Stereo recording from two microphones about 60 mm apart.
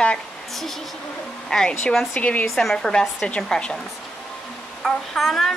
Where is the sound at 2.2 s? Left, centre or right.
Left.